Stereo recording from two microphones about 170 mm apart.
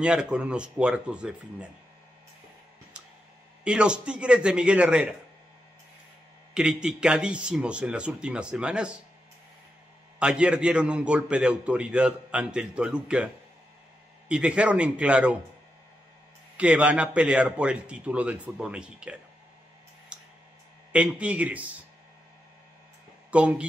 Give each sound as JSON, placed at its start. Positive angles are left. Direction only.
{"t": 0.0, "sound": "a man's voice", "side_deg": -5}
{"t": 3.6, "sound": "a man's voice", "side_deg": -5}
{"t": 6.5, "sound": "a man's voice", "side_deg": -5}
{"t": 10.1, "sound": "a man's voice", "side_deg": -5}
{"t": 14.3, "sound": "a man's voice", "side_deg": -5}
{"t": 16.5, "sound": "a man's voice", "side_deg": -5}
{"t": 20.1, "sound": "tick", "side_deg": -5}
{"t": 20.9, "sound": "a man's voice", "side_deg": -5}
{"t": 23.3, "sound": "a man's voice", "side_deg": -5}